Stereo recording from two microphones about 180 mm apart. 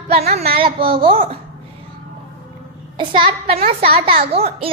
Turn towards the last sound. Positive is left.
turn(degrees=-35)  # may be behind; listen again after turning